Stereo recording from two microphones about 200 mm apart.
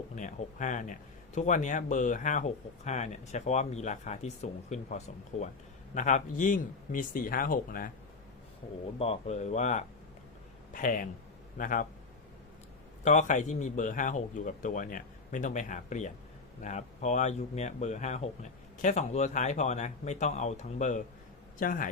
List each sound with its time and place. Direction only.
0.2 s speech: 40° left (ahead or behind)
9.0 s speech: 30° left (ahead or behind)
13.1 s speech: 35° left (ahead or behind)